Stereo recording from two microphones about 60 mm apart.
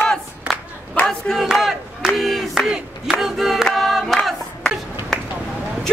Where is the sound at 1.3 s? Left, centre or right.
Centre.